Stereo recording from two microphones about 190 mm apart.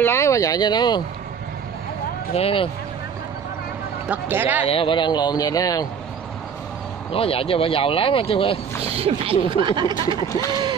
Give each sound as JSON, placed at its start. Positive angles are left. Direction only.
{"t": 0.0, "sound": "speech", "side_deg": 15}
{"t": 2.3, "sound": "speech", "side_deg": 30}
{"t": 4.1, "sound": "speech", "side_deg": -10}
{"t": 4.6, "sound": "speech", "side_deg": 30}
{"t": 7.1, "sound": "speech", "side_deg": 30}
{"t": 8.8, "sound": "speech", "side_deg": -30}
{"t": 10.0, "sound": "speech", "side_deg": 20}